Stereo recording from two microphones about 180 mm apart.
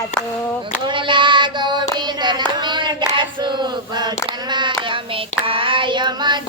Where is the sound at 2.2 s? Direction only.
25° right (ahead or behind).